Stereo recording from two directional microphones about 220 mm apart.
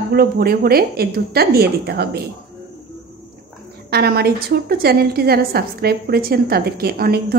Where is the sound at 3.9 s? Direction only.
45° right (ahead or behind).